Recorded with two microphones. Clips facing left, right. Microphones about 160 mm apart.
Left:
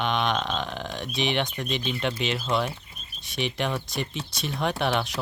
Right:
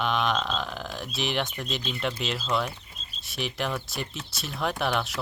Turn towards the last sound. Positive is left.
turn(degrees=0)  # may be behind; listen again after turning